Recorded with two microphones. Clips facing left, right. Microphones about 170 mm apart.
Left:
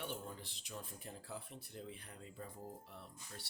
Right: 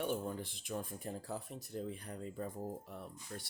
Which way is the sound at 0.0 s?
50° right (ahead or behind).